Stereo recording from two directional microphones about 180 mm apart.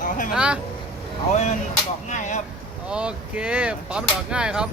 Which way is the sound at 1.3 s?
40° left (ahead or behind).